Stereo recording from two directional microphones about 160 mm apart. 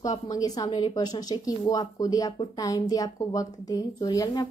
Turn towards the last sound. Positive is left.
turn(degrees=25)  # may be behind; listen again after turning